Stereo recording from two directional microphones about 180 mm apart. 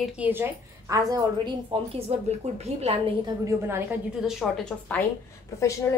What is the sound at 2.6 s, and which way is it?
Speech, 35° right (ahead or behind).